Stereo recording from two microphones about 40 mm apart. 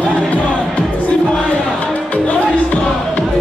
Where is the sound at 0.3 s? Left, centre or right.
Left.